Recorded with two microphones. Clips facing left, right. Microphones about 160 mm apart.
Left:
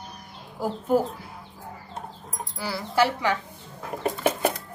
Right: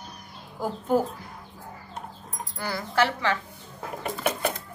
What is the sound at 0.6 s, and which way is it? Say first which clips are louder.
Speech: left 1 dB; 5° left (ahead or behind).